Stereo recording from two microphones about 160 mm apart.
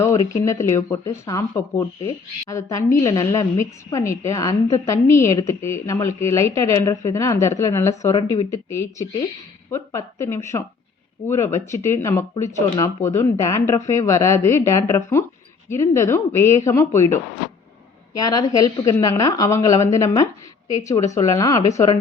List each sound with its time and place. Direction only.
0.0 s speech: 20° left (ahead or behind)
8.1 s speech: 35° left (ahead or behind)
8.4 s speech: 20° left (ahead or behind)
18.2 s speech: 25° left (ahead or behind)